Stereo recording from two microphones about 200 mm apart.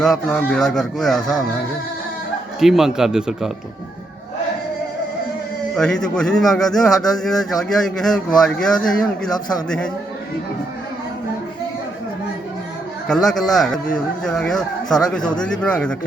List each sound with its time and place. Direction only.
0.0 s speech: 5° left (ahead or behind)
2.6 s speech: centre (ahead or behind)
5.7 s speech: 5° left (ahead or behind)
9.3 s speech: 20° left (ahead or behind)
9.6 s speech: 5° left (ahead or behind)
13.1 s speech: centre (ahead or behind)